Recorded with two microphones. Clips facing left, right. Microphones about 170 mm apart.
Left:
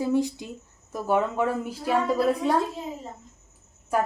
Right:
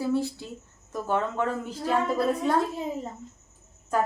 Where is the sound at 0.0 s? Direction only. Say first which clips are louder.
Left 2 dB; 15° left (ahead or behind).